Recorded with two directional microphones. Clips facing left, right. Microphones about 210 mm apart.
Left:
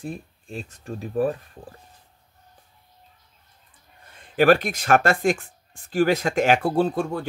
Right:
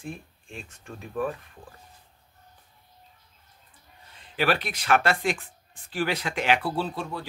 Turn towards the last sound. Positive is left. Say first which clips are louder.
# left 8 dB
turn(degrees=50)  # may be behind; listen again after turning